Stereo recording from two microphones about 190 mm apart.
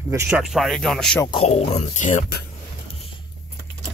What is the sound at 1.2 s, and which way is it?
Speech, 30° left (ahead or behind).